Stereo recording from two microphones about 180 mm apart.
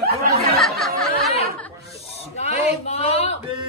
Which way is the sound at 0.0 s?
60° right (ahead or behind).